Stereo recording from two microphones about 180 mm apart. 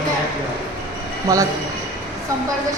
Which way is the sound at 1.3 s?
20° right (ahead or behind).